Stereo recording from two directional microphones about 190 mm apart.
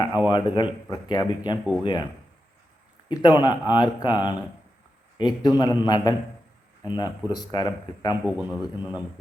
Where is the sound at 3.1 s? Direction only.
20° left (ahead or behind).